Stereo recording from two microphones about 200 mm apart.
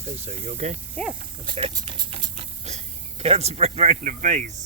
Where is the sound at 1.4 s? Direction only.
25° right (ahead or behind).